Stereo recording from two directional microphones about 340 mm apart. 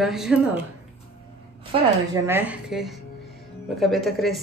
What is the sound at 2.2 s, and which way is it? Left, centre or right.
Speech, centre.